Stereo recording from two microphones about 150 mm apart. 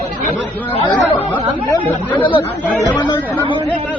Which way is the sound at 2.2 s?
35° left (ahead or behind).